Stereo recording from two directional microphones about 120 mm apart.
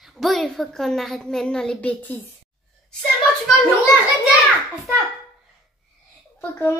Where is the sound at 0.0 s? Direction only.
Centre (ahead or behind).